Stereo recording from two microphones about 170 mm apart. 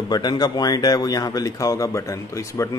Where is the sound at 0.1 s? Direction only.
25° left (ahead or behind).